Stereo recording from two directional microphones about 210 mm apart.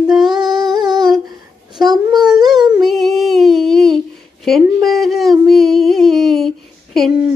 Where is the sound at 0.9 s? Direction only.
20° right (ahead or behind).